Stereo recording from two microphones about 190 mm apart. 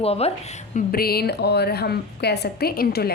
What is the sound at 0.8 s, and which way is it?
A woman's voice, 50° left (ahead or behind).